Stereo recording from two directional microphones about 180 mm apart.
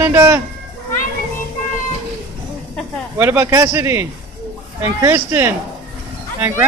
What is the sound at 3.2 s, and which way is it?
Speech, 10° right (ahead or behind).